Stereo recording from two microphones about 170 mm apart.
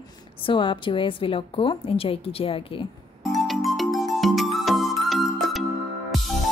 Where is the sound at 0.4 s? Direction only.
30° left (ahead or behind).